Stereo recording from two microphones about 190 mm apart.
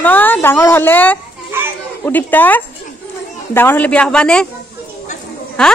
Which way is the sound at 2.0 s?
10° left (ahead or behind).